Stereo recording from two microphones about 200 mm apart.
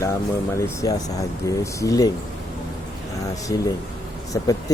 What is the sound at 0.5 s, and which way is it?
Speech, 15° left (ahead or behind).